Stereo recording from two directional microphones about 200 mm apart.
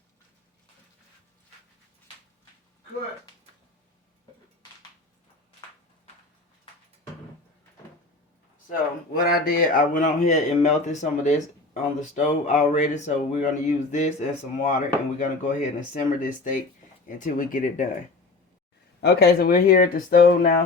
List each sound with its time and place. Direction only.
9.1 s a man's voice: 50° left (ahead or behind)
18.9 s speech: 55° left (ahead or behind)